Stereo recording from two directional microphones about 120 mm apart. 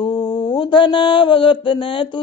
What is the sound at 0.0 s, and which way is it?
Mantra, 40° left (ahead or behind).